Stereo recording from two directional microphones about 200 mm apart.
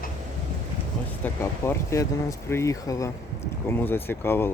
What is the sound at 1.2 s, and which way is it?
Speech, 10° left (ahead or behind).